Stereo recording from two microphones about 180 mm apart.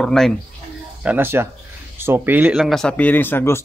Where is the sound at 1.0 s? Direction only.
10° right (ahead or behind).